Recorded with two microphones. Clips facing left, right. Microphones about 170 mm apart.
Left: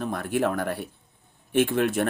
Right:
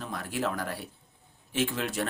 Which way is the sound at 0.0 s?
55° left (ahead or behind).